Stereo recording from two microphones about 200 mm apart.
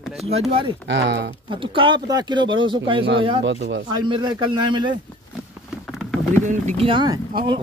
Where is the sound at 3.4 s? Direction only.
65° right (ahead or behind).